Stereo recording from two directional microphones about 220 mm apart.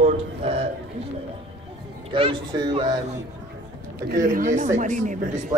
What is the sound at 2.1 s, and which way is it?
Speech, 20° right (ahead or behind).